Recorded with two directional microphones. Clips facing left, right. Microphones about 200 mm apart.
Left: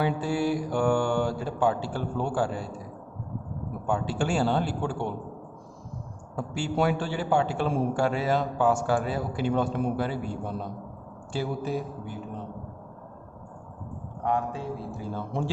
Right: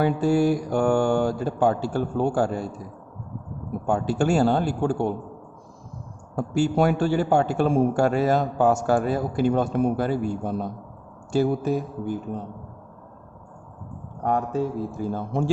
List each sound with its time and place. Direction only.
0.0 s speech: 45° right (ahead or behind)
3.8 s speech: 45° right (ahead or behind)
6.3 s speech: 45° right (ahead or behind)
14.2 s speech: 45° right (ahead or behind)